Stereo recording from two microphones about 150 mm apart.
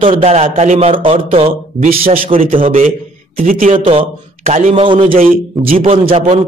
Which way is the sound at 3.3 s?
65° right (ahead or behind).